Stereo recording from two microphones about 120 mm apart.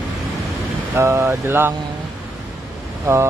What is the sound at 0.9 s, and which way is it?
Speech, 25° right (ahead or behind).